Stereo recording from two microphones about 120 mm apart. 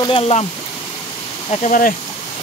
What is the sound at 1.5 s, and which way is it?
Speech, 80° left.